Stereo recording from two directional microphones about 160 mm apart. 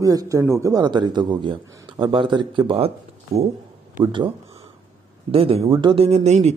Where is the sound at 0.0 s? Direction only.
20° right (ahead or behind).